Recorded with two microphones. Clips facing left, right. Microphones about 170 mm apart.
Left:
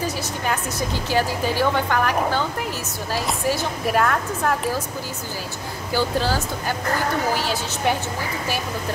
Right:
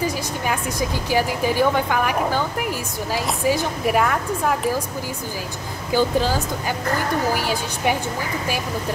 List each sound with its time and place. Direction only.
0.0 s speech: 10° right (ahead or behind)
5.9 s speech: 15° right (ahead or behind)